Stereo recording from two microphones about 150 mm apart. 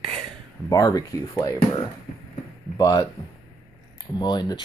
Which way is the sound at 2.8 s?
25° left (ahead or behind).